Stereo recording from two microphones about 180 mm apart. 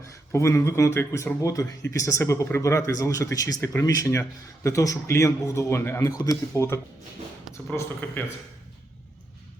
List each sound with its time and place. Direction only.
0.3 s speech: 15° left (ahead or behind)